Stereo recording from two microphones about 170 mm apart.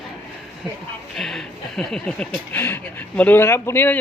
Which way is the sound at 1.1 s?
Centre (ahead or behind).